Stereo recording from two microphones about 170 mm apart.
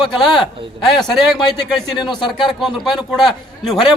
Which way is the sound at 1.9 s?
25° left (ahead or behind).